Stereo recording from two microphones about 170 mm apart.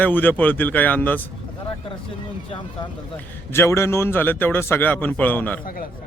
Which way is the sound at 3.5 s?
15° left (ahead or behind).